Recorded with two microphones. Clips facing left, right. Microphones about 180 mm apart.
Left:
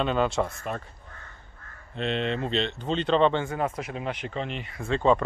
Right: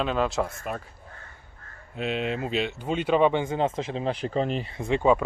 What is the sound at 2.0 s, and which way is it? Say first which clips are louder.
Speech: even; 5° right (ahead or behind).